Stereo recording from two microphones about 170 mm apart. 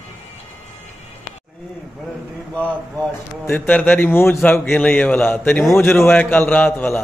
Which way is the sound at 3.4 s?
10° left (ahead or behind).